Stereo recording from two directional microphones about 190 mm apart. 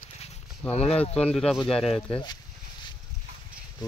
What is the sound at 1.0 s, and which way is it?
Speech, 5° left (ahead or behind).